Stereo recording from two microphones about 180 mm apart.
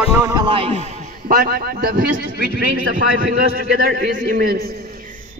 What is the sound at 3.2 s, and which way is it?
A man's voice, 55° right (ahead or behind).